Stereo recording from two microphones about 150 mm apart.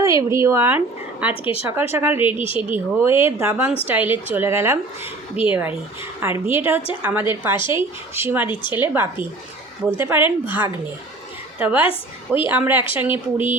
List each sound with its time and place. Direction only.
0.0 s speech: 20° right (ahead or behind)
1.3 s speech: 35° left (ahead or behind)
1.6 s speech: 15° right (ahead or behind)
11.6 s speech: 10° right (ahead or behind)